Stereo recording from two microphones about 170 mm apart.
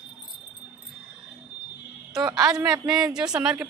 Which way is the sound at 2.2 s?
25° right (ahead or behind).